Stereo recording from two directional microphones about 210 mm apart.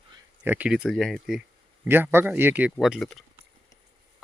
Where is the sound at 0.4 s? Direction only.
10° right (ahead or behind).